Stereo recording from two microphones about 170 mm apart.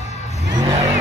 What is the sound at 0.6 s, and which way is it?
Vehicle, 20° right (ahead or behind).